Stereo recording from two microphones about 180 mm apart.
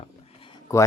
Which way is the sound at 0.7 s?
20° left (ahead or behind).